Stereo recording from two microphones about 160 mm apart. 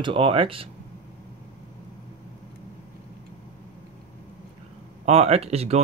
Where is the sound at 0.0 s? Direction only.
35° right (ahead or behind).